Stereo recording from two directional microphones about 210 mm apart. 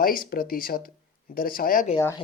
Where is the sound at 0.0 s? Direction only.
45° left (ahead or behind).